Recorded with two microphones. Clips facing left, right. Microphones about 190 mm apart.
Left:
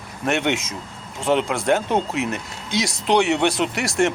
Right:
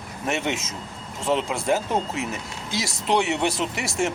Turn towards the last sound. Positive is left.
turn(degrees=0)  # may be behind; listen again after turning